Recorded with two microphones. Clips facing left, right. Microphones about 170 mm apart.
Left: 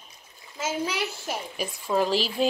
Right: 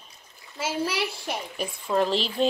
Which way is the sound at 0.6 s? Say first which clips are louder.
Right 1 dB; 10° right (ahead or behind).